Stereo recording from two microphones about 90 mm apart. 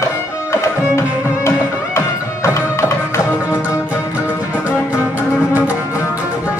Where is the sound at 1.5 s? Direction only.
30° left (ahead or behind).